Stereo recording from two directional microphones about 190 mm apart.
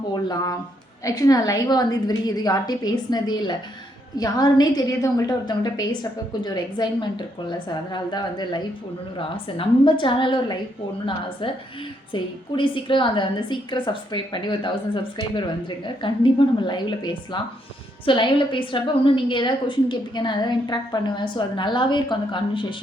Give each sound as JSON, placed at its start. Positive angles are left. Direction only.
{"t": 0.1, "sound": "a woman's voice", "side_deg": 20}
{"t": 18.0, "sound": "a woman's voice", "side_deg": 25}